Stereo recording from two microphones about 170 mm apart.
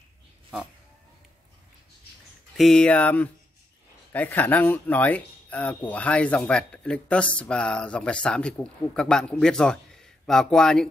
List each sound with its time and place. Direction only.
2.5 s speech: centre (ahead or behind)